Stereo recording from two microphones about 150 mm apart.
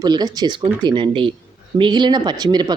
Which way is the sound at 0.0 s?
25° right (ahead or behind).